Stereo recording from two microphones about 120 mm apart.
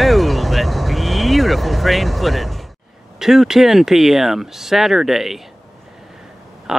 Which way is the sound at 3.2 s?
5° right (ahead or behind).